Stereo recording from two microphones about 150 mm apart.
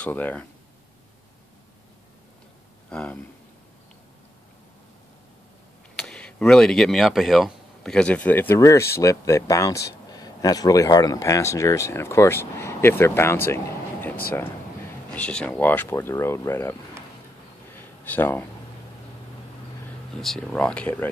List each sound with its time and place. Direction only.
0.0 s speech: 10° left (ahead or behind)
2.9 s a sound: 5° left (ahead or behind)
5.9 s speech: 5° left (ahead or behind)
15.1 s speech: 5° left (ahead or behind)
17.7 s a sound: 10° left (ahead or behind)
20.2 s speech: 5° left (ahead or behind)